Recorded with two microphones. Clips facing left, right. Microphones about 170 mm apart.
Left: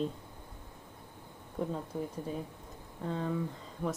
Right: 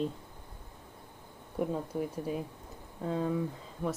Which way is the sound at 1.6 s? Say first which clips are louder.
Right 3 dB; 10° right (ahead or behind).